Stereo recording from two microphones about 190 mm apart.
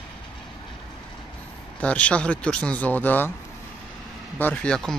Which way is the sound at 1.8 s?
5° left (ahead or behind).